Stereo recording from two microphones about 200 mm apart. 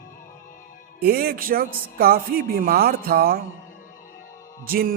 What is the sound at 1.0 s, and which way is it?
A man's voice, 50° right (ahead or behind).